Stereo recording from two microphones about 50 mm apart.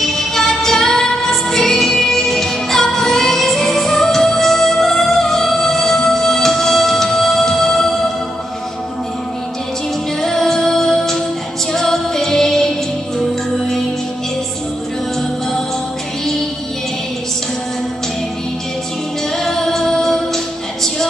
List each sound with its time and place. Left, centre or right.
0.0 s music: centre
10.2 s music: centre
19.3 s music: centre